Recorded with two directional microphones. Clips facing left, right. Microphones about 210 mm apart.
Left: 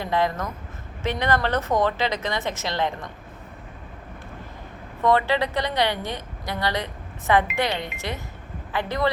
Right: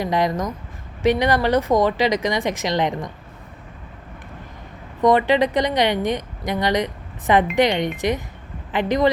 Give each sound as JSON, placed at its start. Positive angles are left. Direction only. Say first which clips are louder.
{"t": 0.0, "sound": "a woman's voice", "louder": "right 3 dB", "side_deg": -15}
{"t": 5.0, "sound": "a woman's voice", "louder": "right 5 dB", "side_deg": -15}